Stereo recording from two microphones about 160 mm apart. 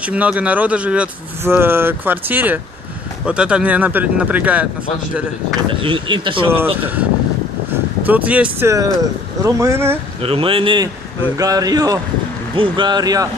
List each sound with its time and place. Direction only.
0.0 s speech: 10° right (ahead or behind)
5.7 s speech: 30° right (ahead or behind)
8.0 s speech: 10° right (ahead or behind)
10.2 s speech: 35° right (ahead or behind)